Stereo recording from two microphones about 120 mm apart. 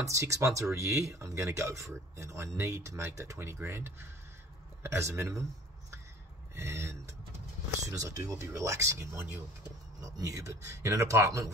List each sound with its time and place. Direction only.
0.0 s speech: 25° right (ahead or behind)
6.5 s speech: 20° right (ahead or behind)